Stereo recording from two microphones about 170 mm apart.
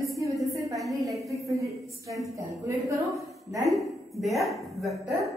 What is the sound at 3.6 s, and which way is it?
Speech, centre (ahead or behind).